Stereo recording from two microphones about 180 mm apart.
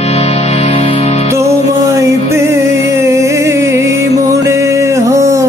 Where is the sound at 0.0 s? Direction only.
35° left (ahead or behind).